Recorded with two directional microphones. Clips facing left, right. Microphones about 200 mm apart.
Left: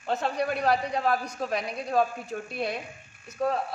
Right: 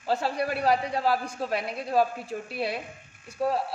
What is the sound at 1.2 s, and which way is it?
Speech, 30° right (ahead or behind).